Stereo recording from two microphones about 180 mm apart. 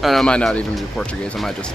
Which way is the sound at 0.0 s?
Centre (ahead or behind).